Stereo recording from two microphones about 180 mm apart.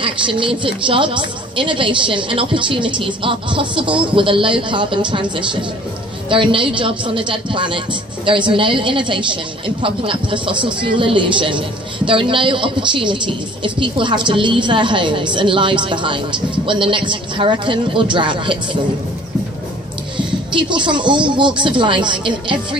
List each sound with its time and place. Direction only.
0.0 s a woman's voice: 30° right (ahead or behind)
20.2 s a woman's voice: 25° right (ahead or behind)